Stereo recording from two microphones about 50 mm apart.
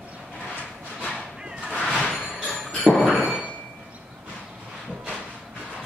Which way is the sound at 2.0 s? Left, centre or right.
Centre.